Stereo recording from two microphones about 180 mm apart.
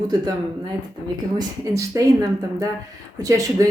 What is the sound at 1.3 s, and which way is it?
Speech, 20° right (ahead or behind).